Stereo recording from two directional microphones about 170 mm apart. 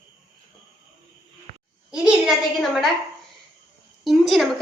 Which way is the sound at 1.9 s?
5° right (ahead or behind).